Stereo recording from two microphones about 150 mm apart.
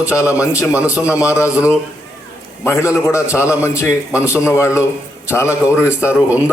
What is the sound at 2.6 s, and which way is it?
A man's voice, 20° left (ahead or behind).